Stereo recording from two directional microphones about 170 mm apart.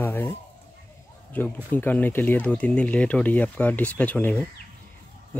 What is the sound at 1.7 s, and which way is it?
Speech, 10° left (ahead or behind).